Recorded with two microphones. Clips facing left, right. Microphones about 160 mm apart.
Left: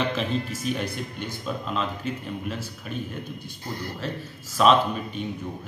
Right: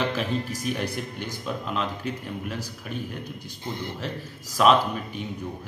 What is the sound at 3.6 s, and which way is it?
A man's voice, 20° right (ahead or behind).